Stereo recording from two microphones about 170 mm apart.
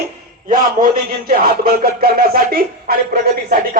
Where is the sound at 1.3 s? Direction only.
60° right (ahead or behind).